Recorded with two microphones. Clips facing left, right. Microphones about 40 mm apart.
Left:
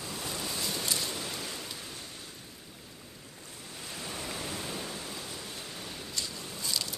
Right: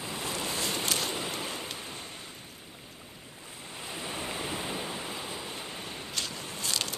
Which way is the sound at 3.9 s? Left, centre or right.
Right.